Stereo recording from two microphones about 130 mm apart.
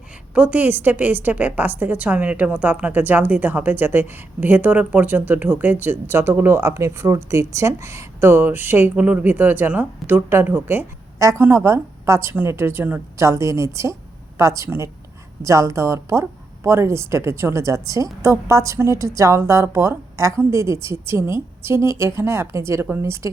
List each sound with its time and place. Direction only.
0.3 s a woman's voice: 10° right (ahead or behind)